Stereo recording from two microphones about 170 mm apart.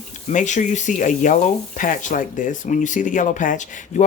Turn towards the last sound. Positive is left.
turn(degrees=45)  # may be behind; listen again after turning